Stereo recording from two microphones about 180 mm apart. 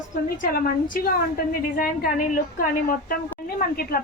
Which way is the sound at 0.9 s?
55° left (ahead or behind).